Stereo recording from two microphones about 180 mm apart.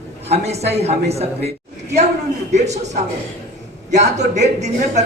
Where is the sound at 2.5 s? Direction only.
40° right (ahead or behind).